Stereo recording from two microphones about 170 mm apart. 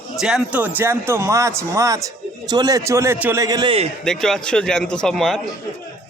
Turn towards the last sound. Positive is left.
turn(degrees=0)  # may be behind; listen again after turning